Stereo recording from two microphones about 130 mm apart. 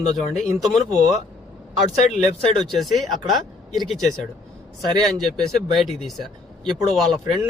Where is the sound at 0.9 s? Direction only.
60° left (ahead or behind).